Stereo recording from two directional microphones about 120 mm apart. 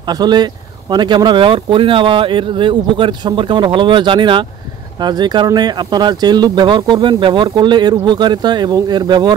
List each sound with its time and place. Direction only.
0.0 s speech: 35° right (ahead or behind)